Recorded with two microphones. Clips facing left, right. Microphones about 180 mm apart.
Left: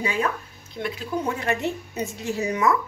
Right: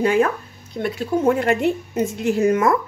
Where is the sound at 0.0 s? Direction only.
55° right (ahead or behind).